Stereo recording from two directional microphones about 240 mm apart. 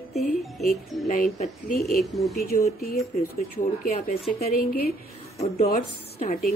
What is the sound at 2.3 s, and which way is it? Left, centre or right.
Speech, left.